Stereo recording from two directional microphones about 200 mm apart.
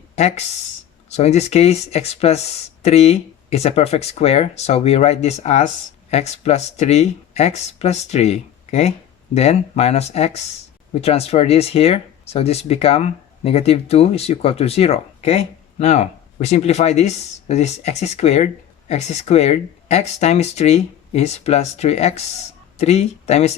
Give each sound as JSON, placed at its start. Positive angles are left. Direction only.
{"t": 0.2, "sound": "speech", "side_deg": 35}